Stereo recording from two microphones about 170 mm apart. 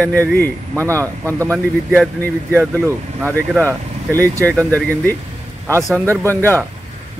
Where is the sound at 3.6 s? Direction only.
10° left (ahead or behind).